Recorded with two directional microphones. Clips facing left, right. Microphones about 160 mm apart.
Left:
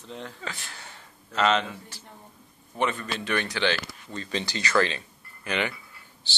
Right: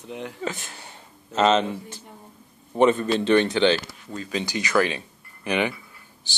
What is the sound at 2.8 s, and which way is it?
A man's voice, 25° right (ahead or behind).